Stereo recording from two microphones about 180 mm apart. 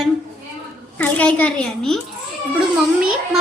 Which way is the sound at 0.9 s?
10° left (ahead or behind).